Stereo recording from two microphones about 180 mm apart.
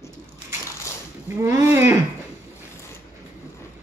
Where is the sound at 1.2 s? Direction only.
15° right (ahead or behind).